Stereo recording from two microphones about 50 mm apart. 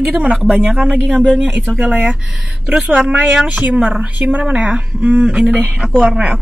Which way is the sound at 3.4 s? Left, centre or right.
Right.